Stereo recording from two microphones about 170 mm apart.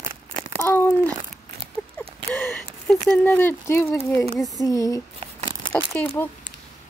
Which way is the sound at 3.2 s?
10° left (ahead or behind).